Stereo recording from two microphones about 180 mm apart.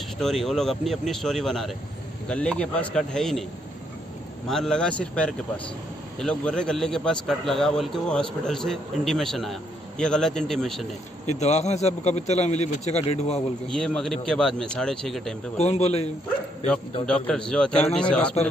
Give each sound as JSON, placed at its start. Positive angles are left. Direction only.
{"t": 0.2, "sound": "a man's voice", "side_deg": 0}
{"t": 4.5, "sound": "a man's voice", "side_deg": 5}
{"t": 11.2, "sound": "a man's voice", "side_deg": 40}
{"t": 13.7, "sound": "a man's voice", "side_deg": 5}
{"t": 15.5, "sound": "a man's voice", "side_deg": 35}
{"t": 17.0, "sound": "a man's voice", "side_deg": 5}